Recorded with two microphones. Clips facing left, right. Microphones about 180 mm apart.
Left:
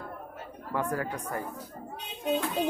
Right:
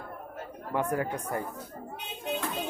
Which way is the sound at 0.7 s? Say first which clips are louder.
Right 2 dB; 20° right (ahead or behind).